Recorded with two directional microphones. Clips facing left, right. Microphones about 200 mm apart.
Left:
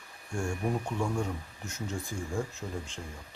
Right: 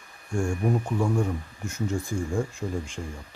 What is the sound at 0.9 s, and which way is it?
Speech, 5° right (ahead or behind).